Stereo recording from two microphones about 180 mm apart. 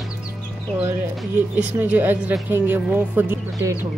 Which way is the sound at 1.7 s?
10° right (ahead or behind).